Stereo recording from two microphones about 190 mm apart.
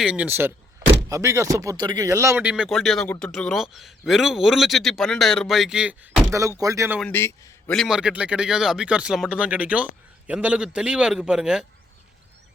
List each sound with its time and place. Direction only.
0.0 s speech: 5° right (ahead or behind)
7.0 s a man's voice: 10° left (ahead or behind)
7.7 s speech: centre (ahead or behind)